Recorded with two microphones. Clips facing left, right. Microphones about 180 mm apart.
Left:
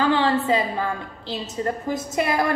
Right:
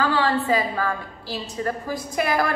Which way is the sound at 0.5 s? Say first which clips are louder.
Even; 20° left (ahead or behind).